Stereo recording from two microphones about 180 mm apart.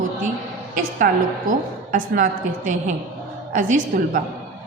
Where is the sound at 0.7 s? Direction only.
50° right (ahead or behind).